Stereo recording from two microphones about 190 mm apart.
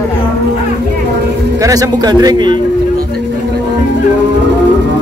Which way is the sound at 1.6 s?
20° right (ahead or behind).